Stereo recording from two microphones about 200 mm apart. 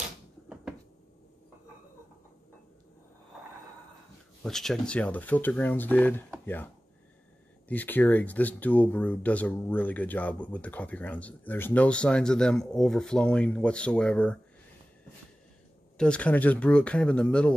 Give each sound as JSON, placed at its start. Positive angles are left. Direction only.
{"t": 4.4, "sound": "speech", "side_deg": 0}
{"t": 16.0, "sound": "speech", "side_deg": 5}